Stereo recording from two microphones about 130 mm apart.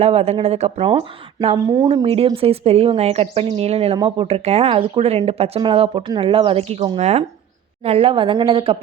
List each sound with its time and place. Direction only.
0.0 s speech: 50° right (ahead or behind)
1.5 s speech: 30° right (ahead or behind)
2.0 s speech: 45° right (ahead or behind)
3.9 s speech: 30° right (ahead or behind)
4.3 s speech: 55° right (ahead or behind)
7.9 s speech: 50° right (ahead or behind)